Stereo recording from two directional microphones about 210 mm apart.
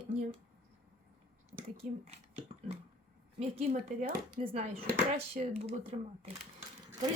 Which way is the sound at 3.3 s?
30° right (ahead or behind).